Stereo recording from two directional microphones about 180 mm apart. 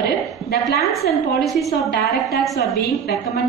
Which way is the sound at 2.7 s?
60° left (ahead or behind).